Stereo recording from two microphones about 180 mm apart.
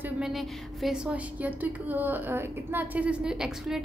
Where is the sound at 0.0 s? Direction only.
5° right (ahead or behind).